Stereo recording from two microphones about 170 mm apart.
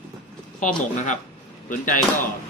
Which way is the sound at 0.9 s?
45° left (ahead or behind).